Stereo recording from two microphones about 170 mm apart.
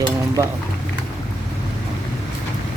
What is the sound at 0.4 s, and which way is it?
Speech, 15° right (ahead or behind).